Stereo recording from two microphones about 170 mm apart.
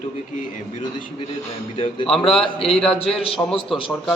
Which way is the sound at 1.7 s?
30° left (ahead or behind).